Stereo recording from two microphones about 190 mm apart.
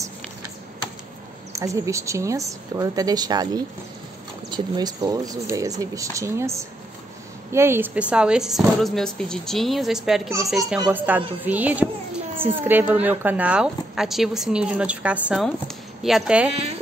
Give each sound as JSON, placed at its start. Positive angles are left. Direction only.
{"t": 1.5, "sound": "speech", "side_deg": -15}